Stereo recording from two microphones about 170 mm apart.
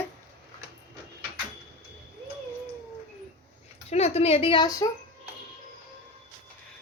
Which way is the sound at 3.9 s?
40° left (ahead or behind).